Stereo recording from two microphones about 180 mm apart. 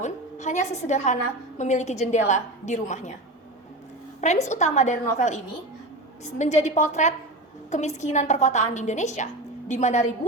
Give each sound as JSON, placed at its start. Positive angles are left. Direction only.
{"t": 0.0, "sound": "a woman's voice", "side_deg": 40}
{"t": 4.2, "sound": "a woman's voice", "side_deg": 40}